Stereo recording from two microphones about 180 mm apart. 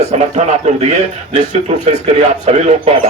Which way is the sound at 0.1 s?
40° right (ahead or behind).